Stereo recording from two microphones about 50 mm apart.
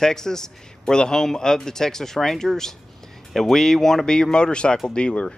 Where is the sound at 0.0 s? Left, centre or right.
Centre.